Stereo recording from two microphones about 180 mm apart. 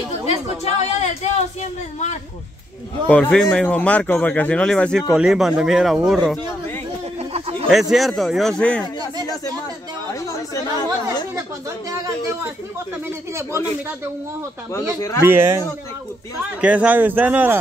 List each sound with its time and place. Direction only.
0.3 s speech: 35° left (ahead or behind)
3.1 s speech: 5° left (ahead or behind)
7.2 s a sound: 35° right (ahead or behind)
7.7 s speech: centre (ahead or behind)
10.2 s speech: 20° left (ahead or behind)
14.7 s speech: 15° left (ahead or behind)
15.2 s speech: 15° right (ahead or behind)
16.6 s speech: 5° right (ahead or behind)